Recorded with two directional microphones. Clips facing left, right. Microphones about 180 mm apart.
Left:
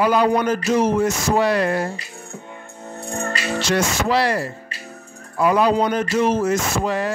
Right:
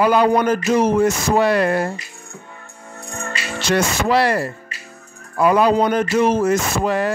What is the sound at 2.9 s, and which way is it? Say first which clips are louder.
Music: left 4 dB; 30° left (ahead or behind).